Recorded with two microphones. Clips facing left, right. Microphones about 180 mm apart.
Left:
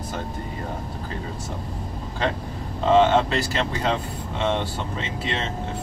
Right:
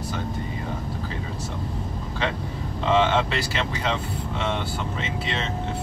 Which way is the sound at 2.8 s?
40° left (ahead or behind).